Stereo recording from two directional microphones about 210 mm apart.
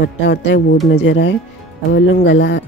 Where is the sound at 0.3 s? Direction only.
55° left (ahead or behind).